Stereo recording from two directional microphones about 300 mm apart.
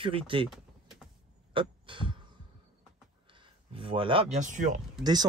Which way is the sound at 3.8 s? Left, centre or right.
Centre.